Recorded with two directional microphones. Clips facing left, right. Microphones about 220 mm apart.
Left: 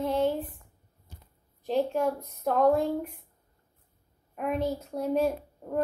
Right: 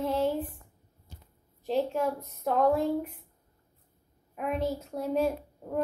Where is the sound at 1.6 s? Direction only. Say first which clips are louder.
Left 2 dB; centre (ahead or behind).